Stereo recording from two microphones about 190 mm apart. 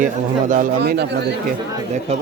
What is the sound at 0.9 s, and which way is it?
Speech, 65° right (ahead or behind).